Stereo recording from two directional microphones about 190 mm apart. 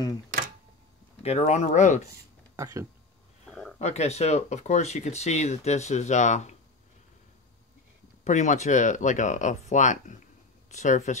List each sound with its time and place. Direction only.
1.2 s speech: 35° left (ahead or behind)
2.5 s speech: 15° right (ahead or behind)
3.4 s a sound: centre (ahead or behind)
3.8 s speech: 35° left (ahead or behind)
8.2 s speech: 40° left (ahead or behind)